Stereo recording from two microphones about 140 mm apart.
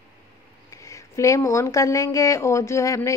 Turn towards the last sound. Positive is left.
turn(degrees=20)  # may be behind; listen again after turning